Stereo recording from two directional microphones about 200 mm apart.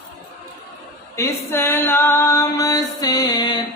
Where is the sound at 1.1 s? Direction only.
15° left (ahead or behind).